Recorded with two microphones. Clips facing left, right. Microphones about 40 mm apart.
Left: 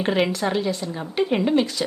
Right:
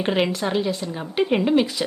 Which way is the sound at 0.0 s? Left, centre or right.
Centre.